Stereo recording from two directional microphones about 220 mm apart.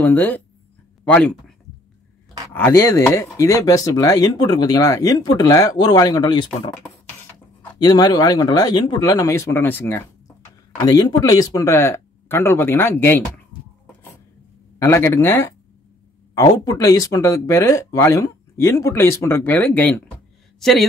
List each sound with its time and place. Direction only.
0.0 s speech: 10° left (ahead or behind)
2.5 s speech: 10° left (ahead or behind)
7.8 s speech: 20° left (ahead or behind)
14.8 s speech: 10° left (ahead or behind)